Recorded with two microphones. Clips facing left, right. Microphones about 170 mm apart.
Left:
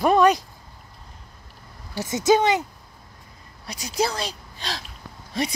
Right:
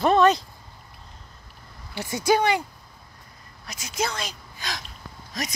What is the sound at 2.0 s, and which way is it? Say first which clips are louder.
Speech: left 3 dB; 20° left (ahead or behind).